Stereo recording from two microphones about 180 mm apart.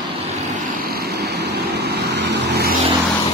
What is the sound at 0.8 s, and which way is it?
Vehicle, 60° right (ahead or behind).